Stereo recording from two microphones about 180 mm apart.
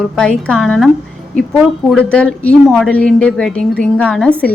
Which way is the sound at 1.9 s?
5° left (ahead or behind).